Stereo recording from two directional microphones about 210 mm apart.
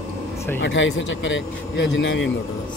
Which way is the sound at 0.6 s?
60° left (ahead or behind).